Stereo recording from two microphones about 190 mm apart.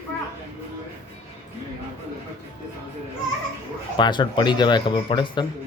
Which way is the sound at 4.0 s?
25° left (ahead or behind).